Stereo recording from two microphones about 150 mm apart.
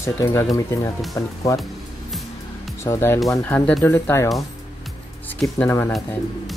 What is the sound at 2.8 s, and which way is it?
Speech, 20° left (ahead or behind).